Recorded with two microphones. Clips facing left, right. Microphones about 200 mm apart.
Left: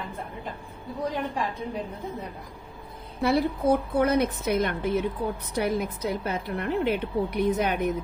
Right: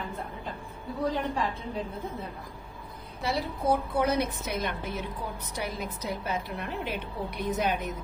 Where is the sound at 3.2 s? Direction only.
60° left (ahead or behind).